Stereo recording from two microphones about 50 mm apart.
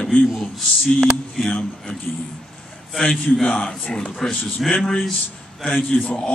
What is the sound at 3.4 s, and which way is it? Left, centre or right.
Speech, left.